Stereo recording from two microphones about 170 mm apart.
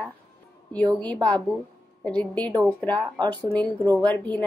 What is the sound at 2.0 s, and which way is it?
Speech, 5° left (ahead or behind).